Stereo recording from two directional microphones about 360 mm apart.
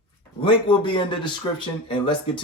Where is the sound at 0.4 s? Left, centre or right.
Centre.